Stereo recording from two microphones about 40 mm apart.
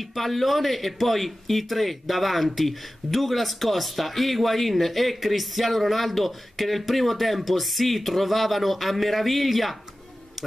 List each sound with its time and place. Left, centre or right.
0.0 s speech: centre